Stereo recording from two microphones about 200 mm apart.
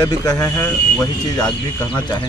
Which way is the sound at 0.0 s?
15° left (ahead or behind).